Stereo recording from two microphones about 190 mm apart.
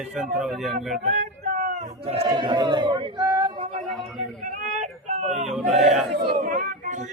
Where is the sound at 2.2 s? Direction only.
25° right (ahead or behind).